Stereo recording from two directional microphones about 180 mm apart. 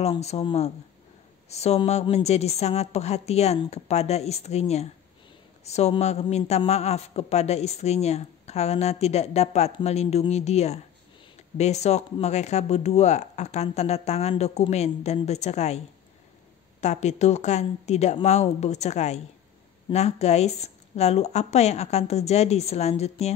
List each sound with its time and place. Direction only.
0.0 s a man's voice: 35° left (ahead or behind)
16.8 s a man's voice: 40° left (ahead or behind)